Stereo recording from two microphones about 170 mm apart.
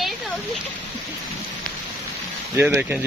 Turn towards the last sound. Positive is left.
turn(degrees=-10)  # may be behind; listen again after turning